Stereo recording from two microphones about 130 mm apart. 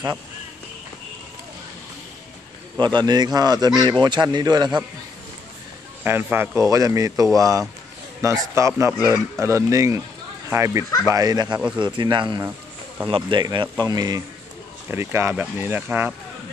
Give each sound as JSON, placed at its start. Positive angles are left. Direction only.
{"t": 2.8, "sound": "speech", "side_deg": -35}
{"t": 6.0, "sound": "speech", "side_deg": -15}